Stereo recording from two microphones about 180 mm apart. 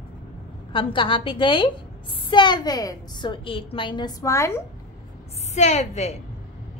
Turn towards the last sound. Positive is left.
turn(degrees=40)  # may be behind; listen again after turning